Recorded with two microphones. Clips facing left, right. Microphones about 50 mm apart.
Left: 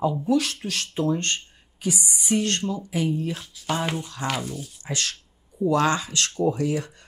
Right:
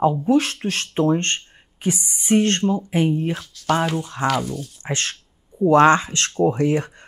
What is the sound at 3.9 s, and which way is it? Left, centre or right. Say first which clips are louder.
Speech: right 6 dB; right.